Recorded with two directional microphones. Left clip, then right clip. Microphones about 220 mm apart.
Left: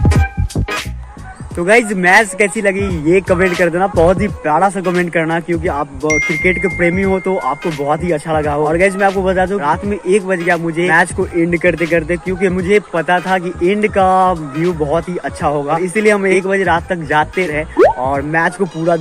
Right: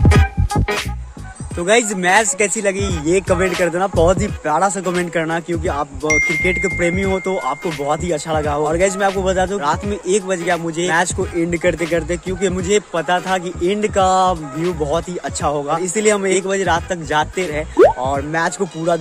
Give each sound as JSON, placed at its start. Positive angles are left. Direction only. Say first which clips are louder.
{"t": 0.0, "sound": "music", "louder": "right 1 dB", "side_deg": 0}
{"t": 1.6, "sound": "speech", "louder": "left 4 dB", "side_deg": -15}
{"t": 6.4, "sound": "speech", "louder": "left 3 dB", "side_deg": -10}